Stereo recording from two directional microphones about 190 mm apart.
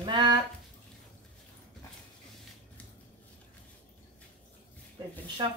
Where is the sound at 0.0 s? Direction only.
25° right (ahead or behind).